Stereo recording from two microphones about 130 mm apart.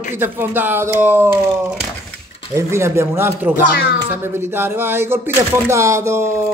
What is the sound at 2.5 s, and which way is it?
Speech, 20° right (ahead or behind).